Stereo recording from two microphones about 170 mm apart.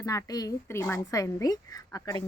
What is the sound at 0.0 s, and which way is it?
A woman's voice, 20° left (ahead or behind).